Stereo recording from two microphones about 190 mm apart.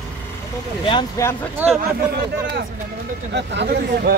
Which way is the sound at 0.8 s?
20° left (ahead or behind).